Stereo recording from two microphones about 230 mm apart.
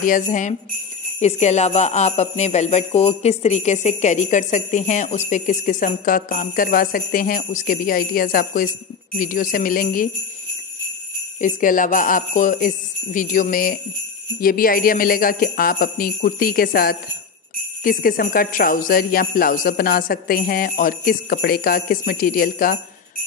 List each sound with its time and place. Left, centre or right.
0.0 s jingle bell: left
11.4 s jingle bell: left